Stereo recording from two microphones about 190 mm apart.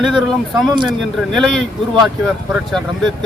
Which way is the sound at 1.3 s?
Centre (ahead or behind).